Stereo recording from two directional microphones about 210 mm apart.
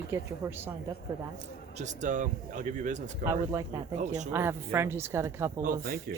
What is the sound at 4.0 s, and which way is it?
Speech, 35° right (ahead or behind).